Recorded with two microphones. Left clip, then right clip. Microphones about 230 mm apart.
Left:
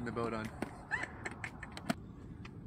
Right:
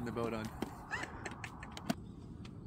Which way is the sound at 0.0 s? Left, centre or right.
Centre.